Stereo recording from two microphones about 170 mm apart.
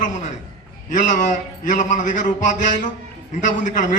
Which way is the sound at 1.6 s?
50° left (ahead or behind).